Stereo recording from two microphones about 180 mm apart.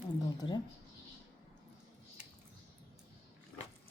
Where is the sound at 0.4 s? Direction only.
25° left (ahead or behind).